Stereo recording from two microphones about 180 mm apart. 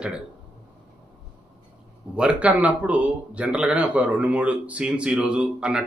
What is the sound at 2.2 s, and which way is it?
Speech, 10° right (ahead or behind).